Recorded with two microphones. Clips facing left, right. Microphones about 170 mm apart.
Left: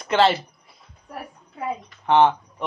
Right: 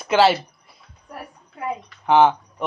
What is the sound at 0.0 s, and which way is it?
Speech, 5° right (ahead or behind).